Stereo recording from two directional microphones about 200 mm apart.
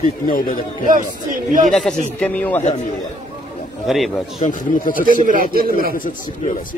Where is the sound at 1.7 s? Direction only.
5° left (ahead or behind).